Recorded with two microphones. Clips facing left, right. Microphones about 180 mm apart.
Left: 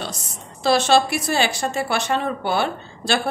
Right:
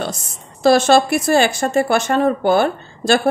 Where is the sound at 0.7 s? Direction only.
50° right (ahead or behind).